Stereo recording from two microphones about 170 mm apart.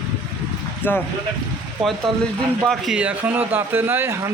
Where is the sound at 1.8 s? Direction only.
Centre (ahead or behind).